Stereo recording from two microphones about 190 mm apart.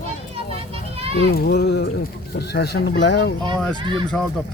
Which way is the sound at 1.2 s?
55° left (ahead or behind).